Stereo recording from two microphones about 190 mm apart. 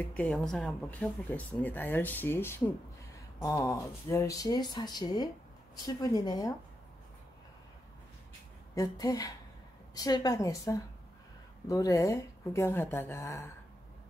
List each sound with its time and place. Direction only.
0.1 s speech: 5° left (ahead or behind)
8.7 s speech: 20° left (ahead or behind)